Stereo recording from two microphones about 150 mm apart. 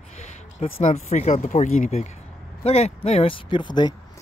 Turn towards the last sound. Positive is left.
turn(degrees=30)  # may be behind; listen again after turning